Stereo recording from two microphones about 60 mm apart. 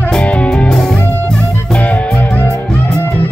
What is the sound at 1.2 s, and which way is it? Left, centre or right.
Music, left.